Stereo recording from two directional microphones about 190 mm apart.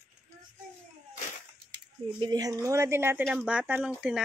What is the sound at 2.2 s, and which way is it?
Speech, 20° right (ahead or behind).